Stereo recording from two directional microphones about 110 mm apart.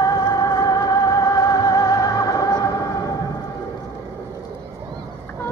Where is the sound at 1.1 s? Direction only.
35° left (ahead or behind).